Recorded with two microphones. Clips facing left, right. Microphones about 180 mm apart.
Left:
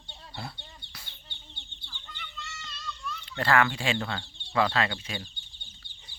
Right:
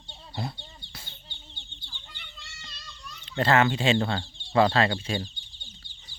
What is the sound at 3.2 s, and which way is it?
Speech, 20° right (ahead or behind).